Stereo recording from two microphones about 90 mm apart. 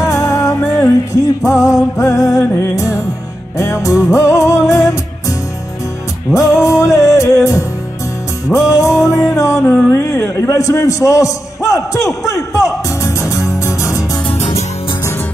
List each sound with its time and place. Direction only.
0.0 s music: 35° left (ahead or behind)
6.3 s music: 35° left (ahead or behind)
9.8 s a man's voice: 35° left (ahead or behind)
13.0 s music: 35° left (ahead or behind)